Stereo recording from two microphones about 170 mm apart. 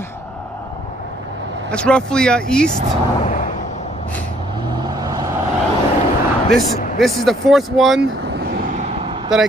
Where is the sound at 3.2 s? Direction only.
45° left (ahead or behind).